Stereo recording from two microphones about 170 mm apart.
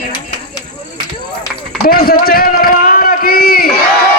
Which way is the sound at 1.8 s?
60° left (ahead or behind).